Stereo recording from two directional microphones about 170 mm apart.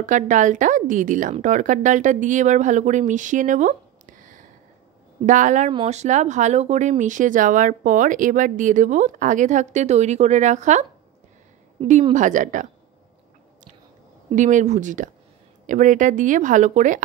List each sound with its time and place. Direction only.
0.0 s speech: 45° right (ahead or behind)
11.9 s speech: 45° right (ahead or behind)
14.3 s speech: 45° right (ahead or behind)